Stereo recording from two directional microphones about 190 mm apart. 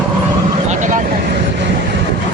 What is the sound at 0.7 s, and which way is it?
Vehicle, 40° right (ahead or behind).